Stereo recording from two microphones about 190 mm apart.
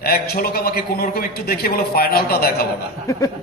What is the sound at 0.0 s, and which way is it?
A man's voice, 55° left (ahead or behind).